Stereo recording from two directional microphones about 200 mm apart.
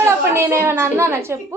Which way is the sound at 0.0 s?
10° right (ahead or behind).